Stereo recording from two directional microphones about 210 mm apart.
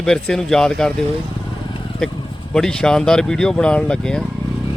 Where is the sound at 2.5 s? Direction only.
5° left (ahead or behind).